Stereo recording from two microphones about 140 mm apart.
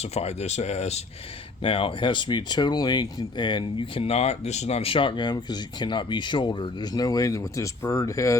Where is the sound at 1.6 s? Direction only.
40° left (ahead or behind).